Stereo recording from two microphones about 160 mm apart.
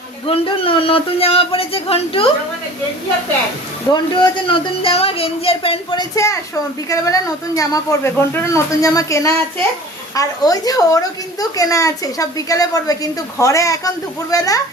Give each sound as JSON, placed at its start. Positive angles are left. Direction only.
{"t": 0.3, "sound": "speech", "side_deg": 35}
{"t": 3.9, "sound": "speech", "side_deg": 30}
{"t": 6.1, "sound": "a woman's voice", "side_deg": 20}